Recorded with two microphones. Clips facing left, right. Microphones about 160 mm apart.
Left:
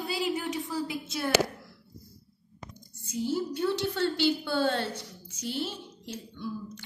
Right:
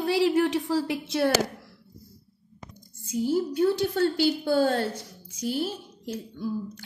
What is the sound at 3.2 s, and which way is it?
Speech, 45° right (ahead or behind).